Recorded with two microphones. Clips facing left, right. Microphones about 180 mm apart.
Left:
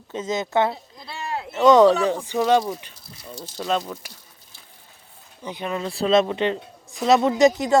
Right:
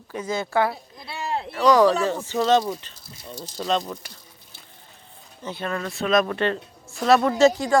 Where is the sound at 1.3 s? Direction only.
30° right (ahead or behind).